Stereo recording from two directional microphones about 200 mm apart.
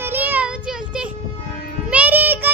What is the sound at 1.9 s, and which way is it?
Child singing, 10° right (ahead or behind).